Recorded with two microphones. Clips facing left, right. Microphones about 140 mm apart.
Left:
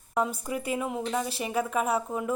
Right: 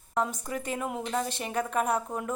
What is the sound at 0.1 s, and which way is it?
A woman's voice, 10° left (ahead or behind).